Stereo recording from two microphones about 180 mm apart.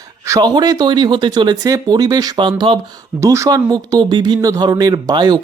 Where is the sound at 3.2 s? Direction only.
15° right (ahead or behind).